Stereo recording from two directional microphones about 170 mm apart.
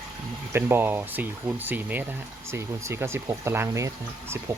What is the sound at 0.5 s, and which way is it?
Speech, 15° right (ahead or behind).